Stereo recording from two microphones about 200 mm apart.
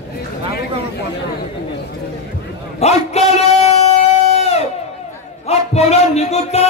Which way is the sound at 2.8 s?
35° left (ahead or behind).